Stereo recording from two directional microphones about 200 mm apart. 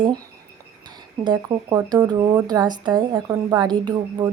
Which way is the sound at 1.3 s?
20° right (ahead or behind).